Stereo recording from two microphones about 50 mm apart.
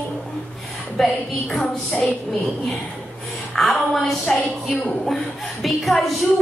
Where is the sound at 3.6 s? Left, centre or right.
Centre.